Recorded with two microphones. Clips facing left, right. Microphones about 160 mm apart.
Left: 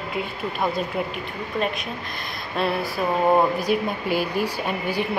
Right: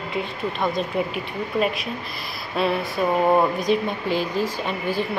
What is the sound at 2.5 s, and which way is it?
Speech, centre (ahead or behind).